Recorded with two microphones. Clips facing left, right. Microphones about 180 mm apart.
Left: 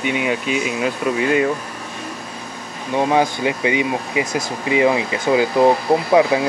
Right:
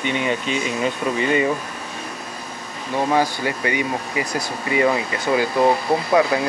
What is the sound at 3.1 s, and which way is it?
Speech, 15° left (ahead or behind).